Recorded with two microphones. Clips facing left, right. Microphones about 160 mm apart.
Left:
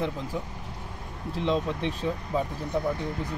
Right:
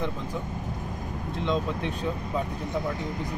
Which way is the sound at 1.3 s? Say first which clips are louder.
Left 1 dB; 30° left (ahead or behind).